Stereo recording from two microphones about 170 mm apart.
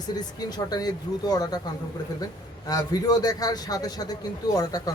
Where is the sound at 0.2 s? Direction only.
25° left (ahead or behind).